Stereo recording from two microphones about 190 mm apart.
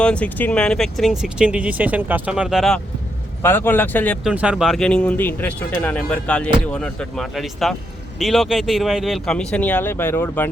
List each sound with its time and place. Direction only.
0.0 s speech: 5° left (ahead or behind)
3.4 s speech: 10° left (ahead or behind)
4.2 s speech: 5° right (ahead or behind); by 10.5 s 10° left (ahead or behind)